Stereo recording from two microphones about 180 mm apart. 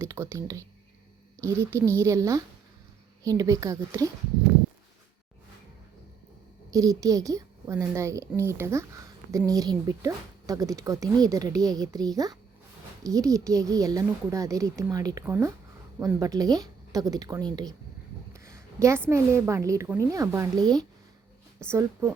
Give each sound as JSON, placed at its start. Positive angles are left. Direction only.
{"t": 0.0, "sound": "a woman's voice", "side_deg": -15}
{"t": 6.7, "sound": "a woman's voice", "side_deg": -20}